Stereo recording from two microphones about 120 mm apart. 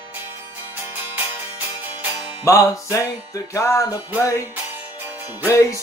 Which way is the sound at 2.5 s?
25° left (ahead or behind).